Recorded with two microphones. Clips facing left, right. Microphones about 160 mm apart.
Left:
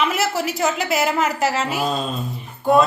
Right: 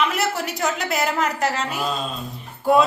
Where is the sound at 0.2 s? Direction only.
5° left (ahead or behind).